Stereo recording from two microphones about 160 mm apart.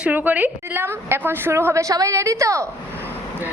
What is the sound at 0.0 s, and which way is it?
A woman's voice, 10° right (ahead or behind).